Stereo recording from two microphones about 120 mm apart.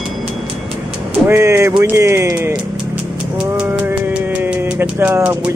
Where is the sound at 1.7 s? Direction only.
20° right (ahead or behind).